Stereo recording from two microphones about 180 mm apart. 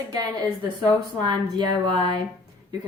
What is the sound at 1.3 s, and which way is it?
Speech, 25° right (ahead or behind).